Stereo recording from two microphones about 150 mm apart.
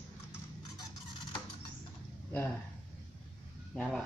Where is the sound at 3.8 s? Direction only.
5° left (ahead or behind).